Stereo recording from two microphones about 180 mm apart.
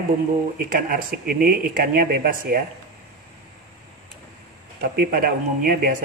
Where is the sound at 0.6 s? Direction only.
50° right (ahead or behind).